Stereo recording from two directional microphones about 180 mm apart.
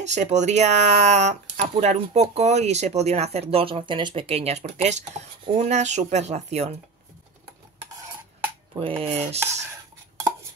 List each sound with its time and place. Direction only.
0.0 s speech: 40° right (ahead or behind)
8.7 s speech: 30° right (ahead or behind)